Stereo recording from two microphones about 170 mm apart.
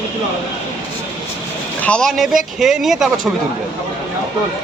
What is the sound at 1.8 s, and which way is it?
Speech, 5° left (ahead or behind).